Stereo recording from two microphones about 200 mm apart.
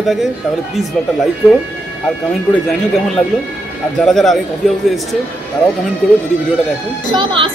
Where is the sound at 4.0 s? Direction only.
Centre (ahead or behind).